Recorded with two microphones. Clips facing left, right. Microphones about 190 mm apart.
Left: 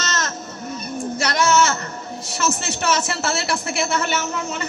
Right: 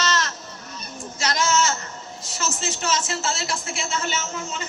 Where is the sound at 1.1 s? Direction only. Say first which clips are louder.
Left 4 dB; 60° left (ahead or behind).